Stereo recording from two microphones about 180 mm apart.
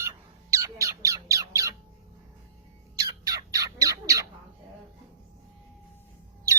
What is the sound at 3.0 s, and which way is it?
Bird, 20° right (ahead or behind).